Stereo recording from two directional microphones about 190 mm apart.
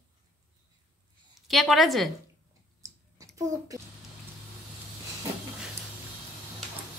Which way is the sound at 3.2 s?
20° right (ahead or behind).